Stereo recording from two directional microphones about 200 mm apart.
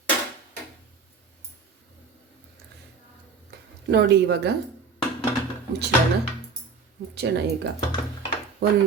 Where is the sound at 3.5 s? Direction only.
55° right (ahead or behind).